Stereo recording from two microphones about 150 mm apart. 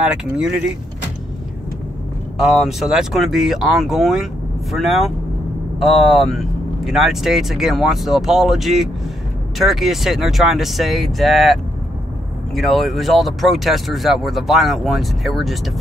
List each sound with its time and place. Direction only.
0.0 s speech: 5° right (ahead or behind)
2.3 s speech: centre (ahead or behind)
12.5 s speech: centre (ahead or behind)